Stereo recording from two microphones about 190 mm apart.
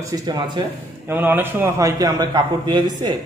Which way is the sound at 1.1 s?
10° right (ahead or behind).